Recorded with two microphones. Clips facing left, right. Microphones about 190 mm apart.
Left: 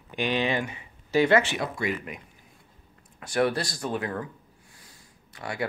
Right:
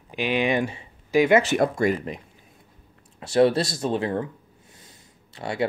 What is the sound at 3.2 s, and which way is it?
Speech, 25° right (ahead or behind).